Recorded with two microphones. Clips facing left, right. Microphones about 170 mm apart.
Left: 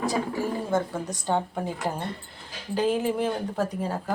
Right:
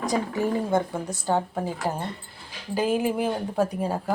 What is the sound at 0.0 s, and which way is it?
Speech, 15° right (ahead or behind).